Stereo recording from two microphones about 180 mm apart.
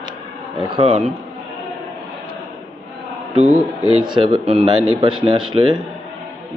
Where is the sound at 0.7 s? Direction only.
35° right (ahead or behind).